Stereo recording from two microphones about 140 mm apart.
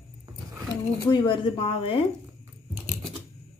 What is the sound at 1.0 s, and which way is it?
Speech, 35° left (ahead or behind).